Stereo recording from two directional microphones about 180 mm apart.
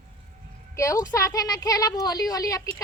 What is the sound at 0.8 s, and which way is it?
A woman's voice, 15° left (ahead or behind).